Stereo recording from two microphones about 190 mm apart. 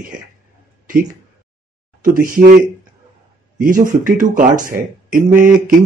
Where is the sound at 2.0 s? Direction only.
45° right (ahead or behind).